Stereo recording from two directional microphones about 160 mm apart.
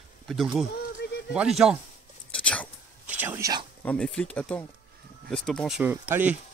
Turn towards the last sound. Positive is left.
turn(degrees=-10)  # may be behind; listen again after turning